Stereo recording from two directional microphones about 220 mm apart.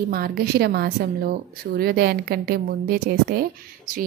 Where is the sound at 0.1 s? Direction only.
45° right (ahead or behind).